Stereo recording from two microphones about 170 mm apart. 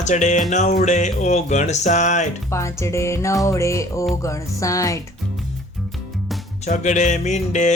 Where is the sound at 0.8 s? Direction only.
45° left (ahead or behind).